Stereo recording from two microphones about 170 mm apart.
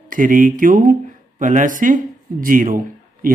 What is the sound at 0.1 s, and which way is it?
Speech, 50° right (ahead or behind).